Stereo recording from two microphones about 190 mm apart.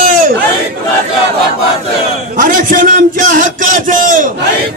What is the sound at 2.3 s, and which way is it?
A man's voice, 45° right (ahead or behind).